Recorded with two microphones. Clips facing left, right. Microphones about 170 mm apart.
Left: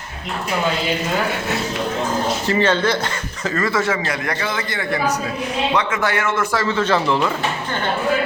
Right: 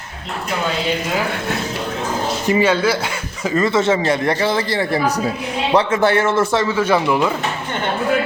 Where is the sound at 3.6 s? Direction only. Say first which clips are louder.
Right 5 dB; 25° right (ahead or behind).